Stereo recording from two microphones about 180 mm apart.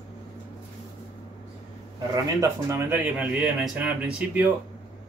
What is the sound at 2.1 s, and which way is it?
Speech, 15° right (ahead or behind).